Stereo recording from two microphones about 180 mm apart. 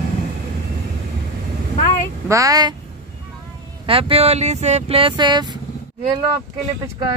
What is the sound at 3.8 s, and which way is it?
Speech, 30° right (ahead or behind).